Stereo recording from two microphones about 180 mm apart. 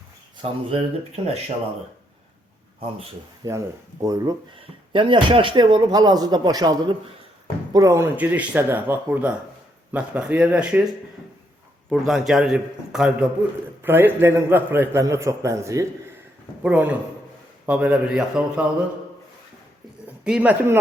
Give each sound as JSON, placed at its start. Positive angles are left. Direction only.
{"t": 0.4, "sound": "speech", "side_deg": -30}
{"t": 3.4, "sound": "speech", "side_deg": -20}
{"t": 4.5, "sound": "a man's voice", "side_deg": -30}
{"t": 20.2, "sound": "a man's voice", "side_deg": -5}